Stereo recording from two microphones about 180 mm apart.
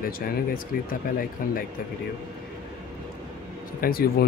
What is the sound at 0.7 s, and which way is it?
Speech, 50° left (ahead or behind).